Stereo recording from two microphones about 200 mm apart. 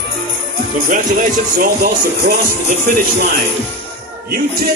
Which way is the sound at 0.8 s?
45° right (ahead or behind).